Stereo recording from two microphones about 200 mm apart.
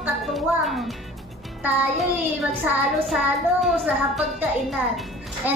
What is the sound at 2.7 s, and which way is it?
A child's voice, centre (ahead or behind).